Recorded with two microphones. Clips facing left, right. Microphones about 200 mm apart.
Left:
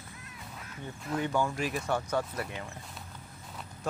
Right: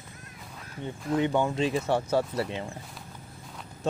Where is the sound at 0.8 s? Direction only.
25° right (ahead or behind).